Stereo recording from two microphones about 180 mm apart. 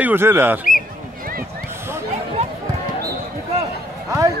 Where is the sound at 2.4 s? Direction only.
40° right (ahead or behind).